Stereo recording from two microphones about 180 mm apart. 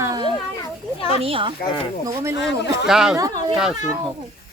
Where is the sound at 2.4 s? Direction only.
Centre (ahead or behind).